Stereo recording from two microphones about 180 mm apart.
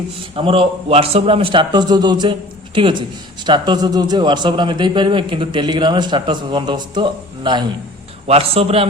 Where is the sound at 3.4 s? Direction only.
25° right (ahead or behind).